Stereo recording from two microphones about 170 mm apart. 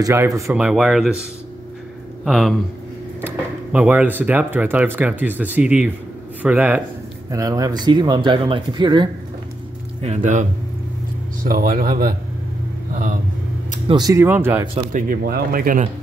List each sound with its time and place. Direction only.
0.0 s speech: 15° right (ahead or behind)
0.6 s speech: 5° right (ahead or behind)
2.2 s speech: centre (ahead or behind)
7.2 s speech: 20° right (ahead or behind)
10.0 s speech: 45° right (ahead or behind)
11.5 s speech: 60° right (ahead or behind)
13.8 s speech: 25° right (ahead or behind)
14.9 s speech: 55° right (ahead or behind)